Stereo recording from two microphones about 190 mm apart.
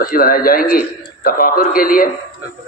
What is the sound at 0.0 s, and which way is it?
A man's voice, 50° left (ahead or behind).